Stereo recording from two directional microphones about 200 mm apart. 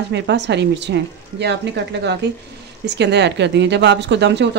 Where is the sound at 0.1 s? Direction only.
60° right (ahead or behind).